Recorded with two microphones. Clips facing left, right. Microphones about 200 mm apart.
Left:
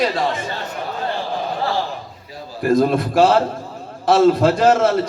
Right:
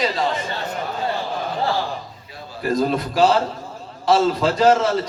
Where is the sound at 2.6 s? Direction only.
50° left (ahead or behind).